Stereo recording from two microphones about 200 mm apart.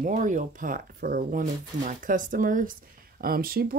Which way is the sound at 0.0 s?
40° right (ahead or behind).